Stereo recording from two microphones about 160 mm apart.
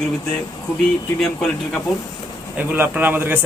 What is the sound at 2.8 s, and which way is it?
Speech, 10° right (ahead or behind).